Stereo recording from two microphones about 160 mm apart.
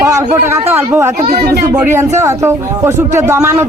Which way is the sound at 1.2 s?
90° right.